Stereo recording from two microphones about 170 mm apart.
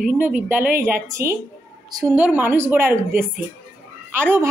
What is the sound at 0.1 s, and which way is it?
A woman's voice, 10° right (ahead or behind).